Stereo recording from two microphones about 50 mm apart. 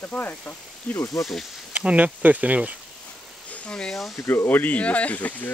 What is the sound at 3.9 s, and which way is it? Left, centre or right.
Speech, centre.